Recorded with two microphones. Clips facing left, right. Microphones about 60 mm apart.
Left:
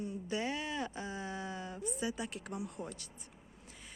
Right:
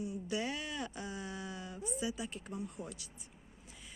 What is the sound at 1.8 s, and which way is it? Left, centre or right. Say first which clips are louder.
Speech: even; left.